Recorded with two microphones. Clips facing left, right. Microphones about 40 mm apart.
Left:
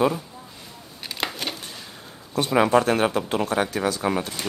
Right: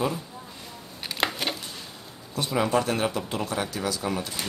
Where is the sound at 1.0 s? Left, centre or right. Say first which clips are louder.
Right 1 dB; centre.